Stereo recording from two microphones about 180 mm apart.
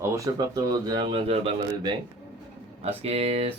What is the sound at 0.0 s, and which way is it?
Speech, 20° right (ahead or behind).